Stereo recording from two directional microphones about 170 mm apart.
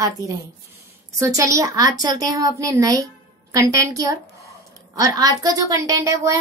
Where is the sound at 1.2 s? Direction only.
20° right (ahead or behind).